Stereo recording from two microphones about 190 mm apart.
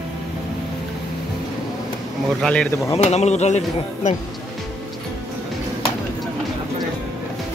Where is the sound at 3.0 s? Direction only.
35° left (ahead or behind).